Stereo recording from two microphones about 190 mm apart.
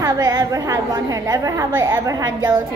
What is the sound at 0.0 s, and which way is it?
A woman's voice, 20° right (ahead or behind).